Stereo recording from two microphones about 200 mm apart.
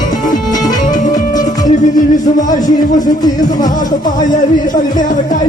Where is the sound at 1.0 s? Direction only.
40° left (ahead or behind).